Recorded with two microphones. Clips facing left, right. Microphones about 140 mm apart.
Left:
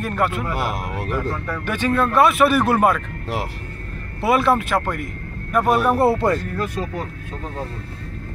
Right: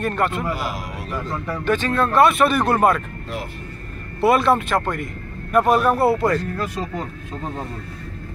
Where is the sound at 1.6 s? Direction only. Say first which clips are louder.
Even; 10° left (ahead or behind).